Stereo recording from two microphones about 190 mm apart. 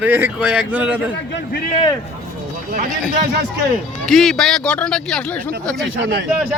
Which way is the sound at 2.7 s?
50° right (ahead or behind).